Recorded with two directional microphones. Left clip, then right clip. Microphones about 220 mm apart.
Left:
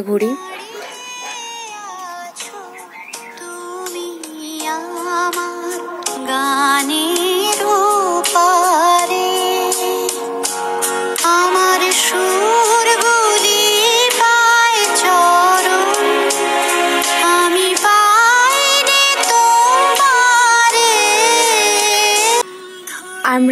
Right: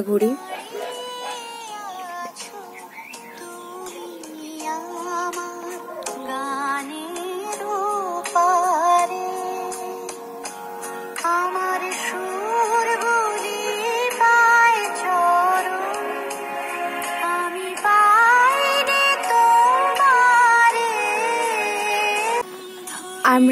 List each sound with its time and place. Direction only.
4.6 s music: 20° left (ahead or behind); by 22.5 s 50° left (ahead or behind)
23.2 s music: 35° left (ahead or behind)